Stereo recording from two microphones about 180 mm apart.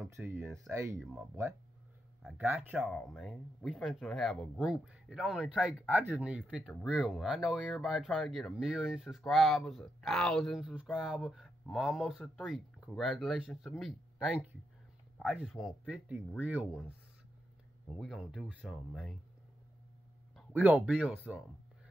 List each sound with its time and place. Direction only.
0.1 s speech: 10° right (ahead or behind)
0.9 s speech: centre (ahead or behind)
2.2 s speech: 10° right (ahead or behind)
2.9 s speech: 5° left (ahead or behind)
20.5 s speech: 10° right (ahead or behind)